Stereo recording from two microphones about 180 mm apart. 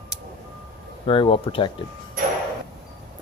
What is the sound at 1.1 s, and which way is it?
Speech, 30° left (ahead or behind).